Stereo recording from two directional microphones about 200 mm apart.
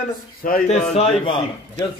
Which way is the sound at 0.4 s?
45° left (ahead or behind).